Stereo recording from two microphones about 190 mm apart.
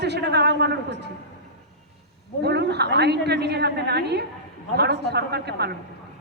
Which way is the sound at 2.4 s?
60° right (ahead or behind).